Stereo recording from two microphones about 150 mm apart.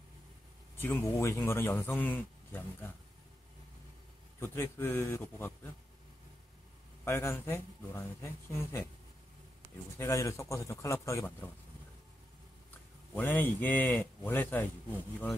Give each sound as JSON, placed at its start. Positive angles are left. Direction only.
{"t": 0.7, "sound": "a man's voice", "side_deg": 15}
{"t": 4.4, "sound": "a man's voice", "side_deg": 15}
{"t": 7.1, "sound": "a man's voice", "side_deg": 15}
{"t": 9.9, "sound": "a man's voice", "side_deg": 20}
{"t": 13.1, "sound": "a man's voice", "side_deg": 15}